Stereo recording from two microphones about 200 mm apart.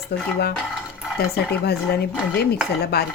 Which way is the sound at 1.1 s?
55° left (ahead or behind).